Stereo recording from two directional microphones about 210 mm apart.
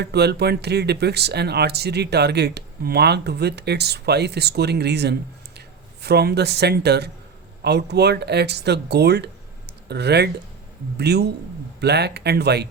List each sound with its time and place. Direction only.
0.0 s speech: 50° right (ahead or behind)